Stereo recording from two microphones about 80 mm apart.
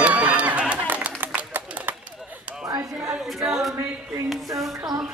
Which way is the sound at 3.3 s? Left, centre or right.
Centre.